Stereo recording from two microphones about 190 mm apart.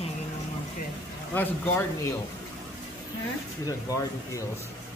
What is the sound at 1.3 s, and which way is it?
Speech, 10° left (ahead or behind).